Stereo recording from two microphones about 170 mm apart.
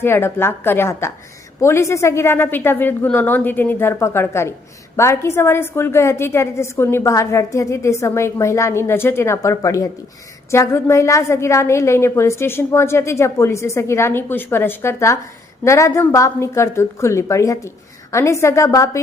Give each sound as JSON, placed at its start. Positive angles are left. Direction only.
{"t": 0.0, "sound": "a woman's voice", "side_deg": 15}